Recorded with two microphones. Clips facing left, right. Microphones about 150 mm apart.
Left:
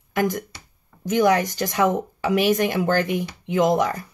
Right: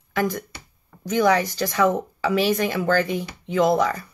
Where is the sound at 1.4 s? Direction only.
15° left (ahead or behind).